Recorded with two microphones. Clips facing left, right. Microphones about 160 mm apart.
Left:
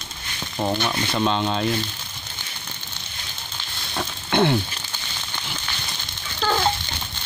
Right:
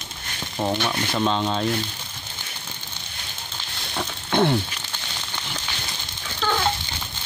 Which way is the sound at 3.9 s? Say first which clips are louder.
Left 1 dB; centre (ahead or behind).